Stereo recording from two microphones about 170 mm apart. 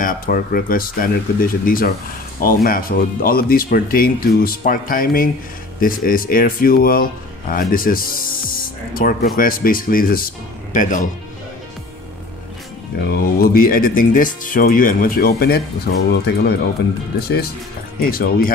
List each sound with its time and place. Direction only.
0.0 s speech: 55° left (ahead or behind)
13.1 s speech: 60° left (ahead or behind)